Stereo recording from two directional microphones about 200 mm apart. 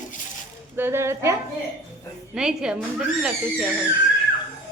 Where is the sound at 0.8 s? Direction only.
10° right (ahead or behind).